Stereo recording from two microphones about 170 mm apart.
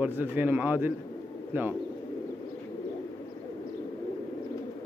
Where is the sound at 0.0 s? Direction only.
10° right (ahead or behind).